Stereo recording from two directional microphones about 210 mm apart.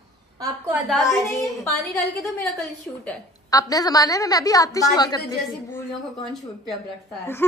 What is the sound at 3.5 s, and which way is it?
A woman's voice, 15° left (ahead or behind).